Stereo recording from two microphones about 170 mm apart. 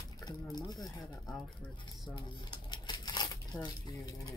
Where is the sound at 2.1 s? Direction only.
25° left (ahead or behind).